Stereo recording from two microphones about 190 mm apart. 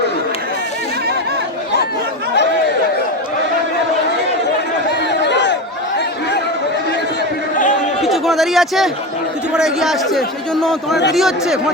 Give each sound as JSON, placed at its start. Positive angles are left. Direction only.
{"t": 5.2, "sound": "crowd", "side_deg": 65}
{"t": 8.0, "sound": "a man's voice", "side_deg": 0}